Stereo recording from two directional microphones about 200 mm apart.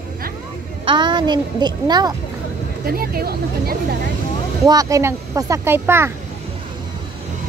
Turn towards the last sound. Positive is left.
turn(degrees=-10)  # may be behind; listen again after turning